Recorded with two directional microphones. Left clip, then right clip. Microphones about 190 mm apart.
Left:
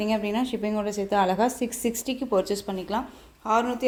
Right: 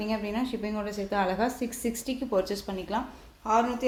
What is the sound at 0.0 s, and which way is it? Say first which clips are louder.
A woman's voice: left 5 dB; 40° left (ahead or behind).